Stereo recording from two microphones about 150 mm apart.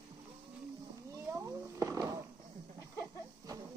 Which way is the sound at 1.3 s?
15° right (ahead or behind).